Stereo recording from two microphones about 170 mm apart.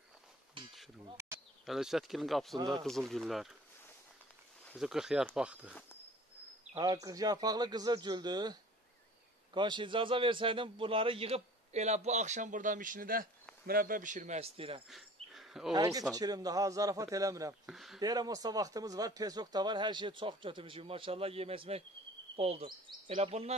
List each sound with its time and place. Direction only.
1.0 s bee: 15° right (ahead or behind)
1.7 s speech: centre (ahead or behind)
4.6 s speech: centre (ahead or behind)
6.8 s a man's voice: 20° right (ahead or behind)
14.9 s a sound: centre (ahead or behind)
15.7 s speech: 20° right (ahead or behind)
17.6 s speech: centre (ahead or behind)
18.0 s a man's voice: 20° right (ahead or behind); by 23.5 s 35° right (ahead or behind)